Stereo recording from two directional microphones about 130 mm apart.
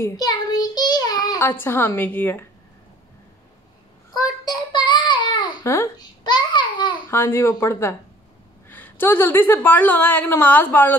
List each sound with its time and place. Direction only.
0.2 s child singing: 30° left (ahead or behind)
1.5 s a woman's voice: 15° left (ahead or behind)
4.1 s child singing: 30° left (ahead or behind)
5.6 s a sound: 20° left (ahead or behind)
5.9 s a sound: 35° left (ahead or behind)
7.1 s a woman's voice: 20° left (ahead or behind)